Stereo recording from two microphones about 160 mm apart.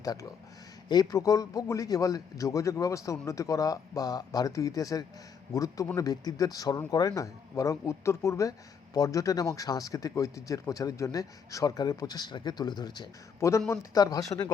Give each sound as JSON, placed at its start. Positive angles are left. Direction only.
{"t": 0.0, "sound": "speech", "side_deg": 20}